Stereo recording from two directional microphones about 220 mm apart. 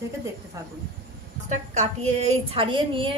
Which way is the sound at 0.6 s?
15° right (ahead or behind).